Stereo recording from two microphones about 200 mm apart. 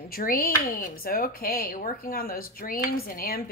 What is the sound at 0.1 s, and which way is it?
A woman's voice, 45° left (ahead or behind).